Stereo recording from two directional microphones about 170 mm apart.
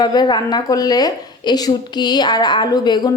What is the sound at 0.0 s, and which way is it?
A woman's voice, 25° left (ahead or behind).